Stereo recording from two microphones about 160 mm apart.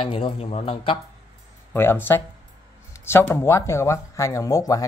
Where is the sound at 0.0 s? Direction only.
35° left (ahead or behind).